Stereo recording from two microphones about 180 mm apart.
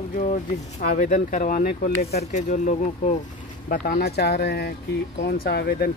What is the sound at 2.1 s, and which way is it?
Speech, 40° left (ahead or behind).